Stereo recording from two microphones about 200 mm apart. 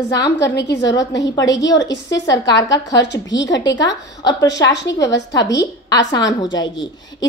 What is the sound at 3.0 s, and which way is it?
Speech, 60° left (ahead or behind).